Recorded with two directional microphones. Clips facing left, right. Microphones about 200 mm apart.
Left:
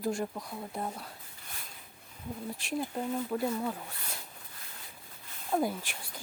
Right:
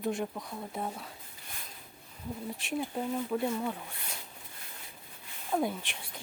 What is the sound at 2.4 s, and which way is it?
Speech, centre (ahead or behind).